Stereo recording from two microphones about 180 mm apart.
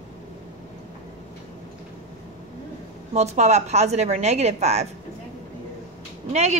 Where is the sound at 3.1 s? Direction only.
40° right (ahead or behind).